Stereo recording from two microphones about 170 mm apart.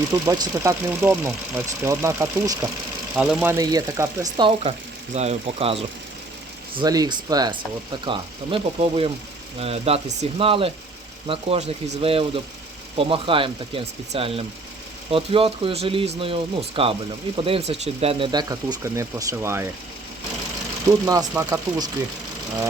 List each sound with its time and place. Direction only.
0.1 s speech: 25° right (ahead or behind)
3.2 s speech: 5° right (ahead or behind)
3.6 s speech: 20° right (ahead or behind)
4.4 s speech: 30° right (ahead or behind)
5.1 s speech: 40° right (ahead or behind)
6.7 s speech: 20° right (ahead or behind)
21.0 s speech: 20° right (ahead or behind)